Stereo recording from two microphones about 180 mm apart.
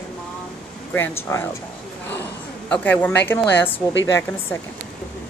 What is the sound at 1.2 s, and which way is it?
Speech, 10° left (ahead or behind).